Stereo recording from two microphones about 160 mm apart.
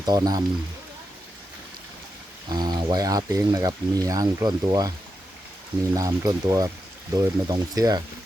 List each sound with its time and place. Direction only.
0.0 s speech: 25° right (ahead or behind)
2.5 s speech: 25° right (ahead or behind)
6.0 s speech: 25° right (ahead or behind)